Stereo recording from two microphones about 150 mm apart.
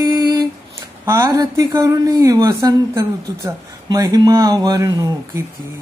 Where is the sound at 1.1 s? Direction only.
20° right (ahead or behind).